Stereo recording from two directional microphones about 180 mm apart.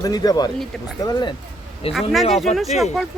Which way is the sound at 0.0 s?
20° left (ahead or behind).